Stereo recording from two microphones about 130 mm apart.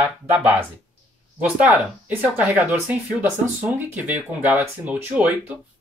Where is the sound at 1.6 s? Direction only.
15° right (ahead or behind).